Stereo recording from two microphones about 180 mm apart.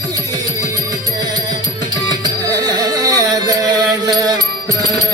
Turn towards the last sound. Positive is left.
turn(degrees=-20)  # may be behind; listen again after turning